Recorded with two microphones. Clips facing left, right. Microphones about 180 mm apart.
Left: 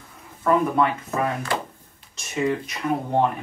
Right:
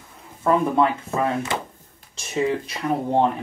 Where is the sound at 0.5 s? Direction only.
20° right (ahead or behind).